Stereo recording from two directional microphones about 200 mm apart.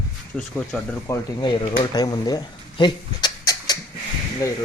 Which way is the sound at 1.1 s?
25° left (ahead or behind).